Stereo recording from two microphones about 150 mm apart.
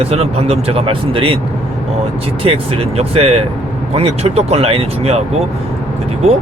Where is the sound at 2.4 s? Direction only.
40° right (ahead or behind).